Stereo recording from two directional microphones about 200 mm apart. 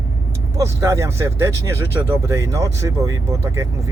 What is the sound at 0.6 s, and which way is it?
Speech, 15° right (ahead or behind).